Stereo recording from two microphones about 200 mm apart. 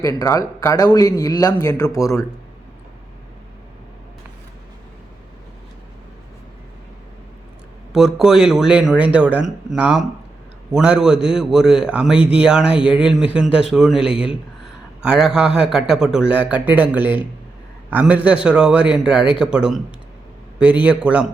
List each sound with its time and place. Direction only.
0.0 s speech: 15° left (ahead or behind)
7.9 s a man's voice: centre (ahead or behind)